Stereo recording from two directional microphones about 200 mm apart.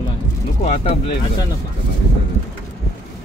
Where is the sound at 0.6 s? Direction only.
30° left (ahead or behind).